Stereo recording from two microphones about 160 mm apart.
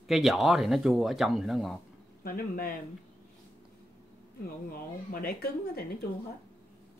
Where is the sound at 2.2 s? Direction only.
65° left (ahead or behind).